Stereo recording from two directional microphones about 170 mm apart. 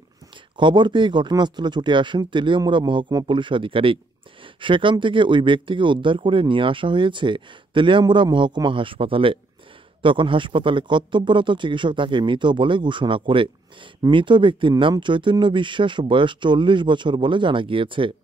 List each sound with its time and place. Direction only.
0.6 s speech: 30° right (ahead or behind)